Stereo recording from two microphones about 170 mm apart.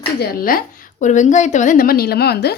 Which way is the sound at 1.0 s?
45° left (ahead or behind).